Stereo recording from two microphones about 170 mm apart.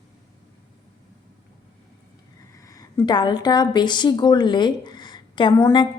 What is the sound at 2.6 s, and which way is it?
A woman's voice, 20° left (ahead or behind).